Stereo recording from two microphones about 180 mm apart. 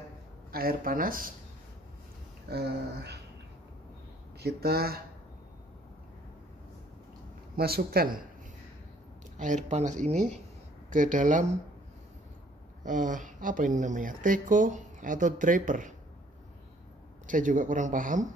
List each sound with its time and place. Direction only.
0.5 s speech: 55° right (ahead or behind)
2.5 s speech: 65° right (ahead or behind)
4.4 s speech: 65° right (ahead or behind)
7.5 s speech: 60° right (ahead or behind)
9.4 s speech: 40° right (ahead or behind)
12.8 s speech: 45° right (ahead or behind)
17.3 s speech: 45° right (ahead or behind)